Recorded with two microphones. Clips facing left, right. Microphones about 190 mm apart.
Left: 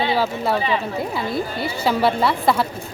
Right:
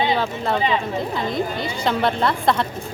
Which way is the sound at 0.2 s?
5° left (ahead or behind).